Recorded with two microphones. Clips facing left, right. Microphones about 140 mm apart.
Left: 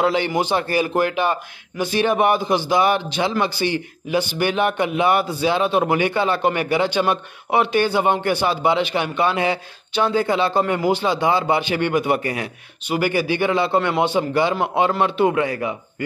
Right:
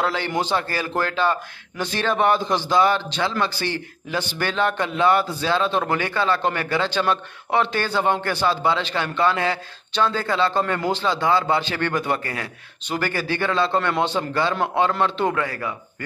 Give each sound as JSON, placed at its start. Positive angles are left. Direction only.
{"t": 0.0, "sound": "speech", "side_deg": 15}